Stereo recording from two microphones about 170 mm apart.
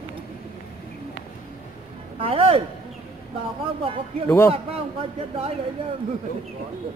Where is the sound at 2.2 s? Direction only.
35° right (ahead or behind).